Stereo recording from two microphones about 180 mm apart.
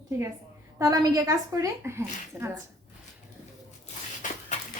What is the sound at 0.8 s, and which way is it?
Speech, 20° right (ahead or behind).